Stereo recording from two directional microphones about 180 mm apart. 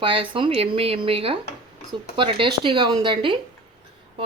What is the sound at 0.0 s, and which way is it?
Speech, 30° right (ahead or behind).